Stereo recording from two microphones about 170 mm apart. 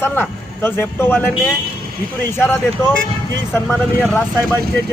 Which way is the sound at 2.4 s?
15° left (ahead or behind).